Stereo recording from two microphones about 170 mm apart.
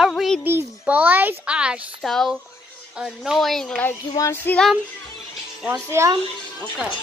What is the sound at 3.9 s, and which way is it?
Speech, 15° left (ahead or behind).